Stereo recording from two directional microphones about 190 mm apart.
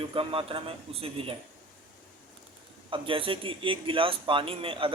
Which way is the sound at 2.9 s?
25° right (ahead or behind).